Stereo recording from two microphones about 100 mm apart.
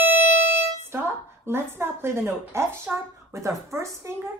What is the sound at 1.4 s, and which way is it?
A woman's voice, 25° right (ahead or behind).